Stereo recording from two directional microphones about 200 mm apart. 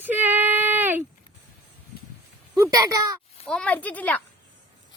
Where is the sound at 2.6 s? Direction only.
15° right (ahead or behind).